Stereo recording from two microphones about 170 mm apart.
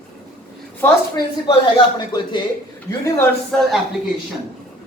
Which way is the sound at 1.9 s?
25° left (ahead or behind).